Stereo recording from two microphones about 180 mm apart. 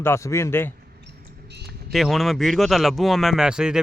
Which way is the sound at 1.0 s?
70° right (ahead or behind).